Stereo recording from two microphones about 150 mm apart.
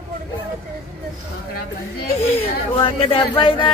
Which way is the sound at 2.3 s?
40° left (ahead or behind).